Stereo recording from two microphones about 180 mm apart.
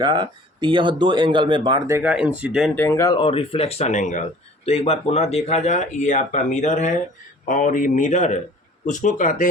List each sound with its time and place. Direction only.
0.0 s speech: 25° right (ahead or behind)
2.0 s speech: 10° right (ahead or behind)
2.8 s speech: 20° left (ahead or behind); by 9.5 s 45° left (ahead or behind)